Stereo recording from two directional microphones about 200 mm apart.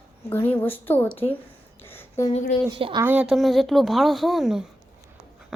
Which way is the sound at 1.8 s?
10° left (ahead or behind).